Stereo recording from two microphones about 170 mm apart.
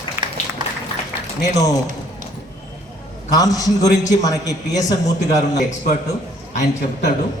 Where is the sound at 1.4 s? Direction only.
20° left (ahead or behind).